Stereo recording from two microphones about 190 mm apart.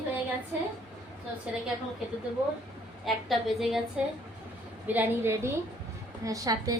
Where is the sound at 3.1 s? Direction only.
Centre (ahead or behind).